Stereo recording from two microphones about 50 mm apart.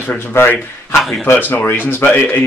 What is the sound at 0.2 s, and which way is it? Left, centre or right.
Speech, left.